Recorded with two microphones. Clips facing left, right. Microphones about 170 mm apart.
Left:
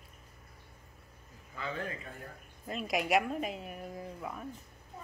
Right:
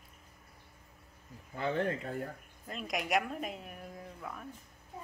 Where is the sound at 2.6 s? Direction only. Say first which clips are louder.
Left 4 dB; centre (ahead or behind).